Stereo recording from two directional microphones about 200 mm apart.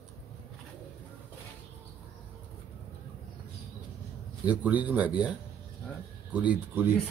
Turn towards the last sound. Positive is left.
turn(degrees=-5)  # may be behind; listen again after turning